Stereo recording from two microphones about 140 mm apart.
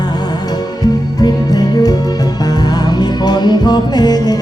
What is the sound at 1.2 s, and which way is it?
Music, 25° left (ahead or behind).